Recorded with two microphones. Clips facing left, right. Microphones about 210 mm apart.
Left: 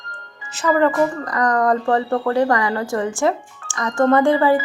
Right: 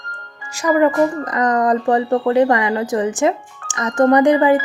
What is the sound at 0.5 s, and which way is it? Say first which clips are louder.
A woman's voice: right 2 dB; 10° right (ahead or behind).